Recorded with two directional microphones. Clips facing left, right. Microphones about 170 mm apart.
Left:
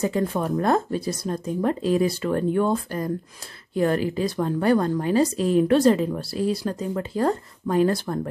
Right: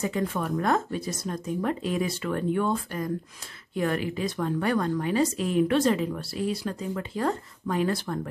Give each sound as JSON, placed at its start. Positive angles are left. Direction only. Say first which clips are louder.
{"t": 0.0, "sound": "speech", "louder": "left 4 dB", "side_deg": 35}